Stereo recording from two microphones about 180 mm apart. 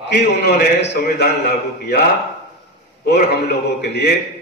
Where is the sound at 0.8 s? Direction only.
60° left (ahead or behind).